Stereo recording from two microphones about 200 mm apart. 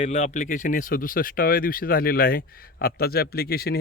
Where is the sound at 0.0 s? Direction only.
35° left (ahead or behind).